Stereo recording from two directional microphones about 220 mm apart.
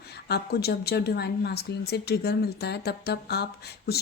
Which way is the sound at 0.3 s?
45° left (ahead or behind).